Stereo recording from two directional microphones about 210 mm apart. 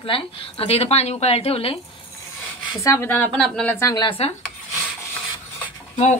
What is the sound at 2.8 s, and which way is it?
Speech, 10° left (ahead or behind).